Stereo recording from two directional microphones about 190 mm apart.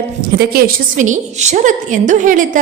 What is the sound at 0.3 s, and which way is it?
A woman's voice, 45° right (ahead or behind).